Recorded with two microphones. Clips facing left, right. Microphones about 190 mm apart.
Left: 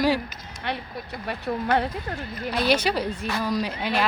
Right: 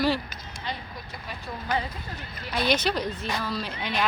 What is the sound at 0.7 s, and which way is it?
Speech, 65° left (ahead or behind).